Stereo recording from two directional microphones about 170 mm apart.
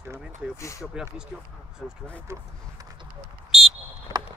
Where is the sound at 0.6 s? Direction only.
20° left (ahead or behind).